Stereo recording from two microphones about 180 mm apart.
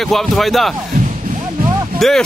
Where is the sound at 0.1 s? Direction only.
Centre (ahead or behind).